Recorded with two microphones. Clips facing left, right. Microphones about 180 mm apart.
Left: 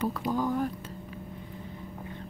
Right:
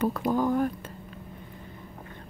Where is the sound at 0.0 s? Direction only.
50° right (ahead or behind).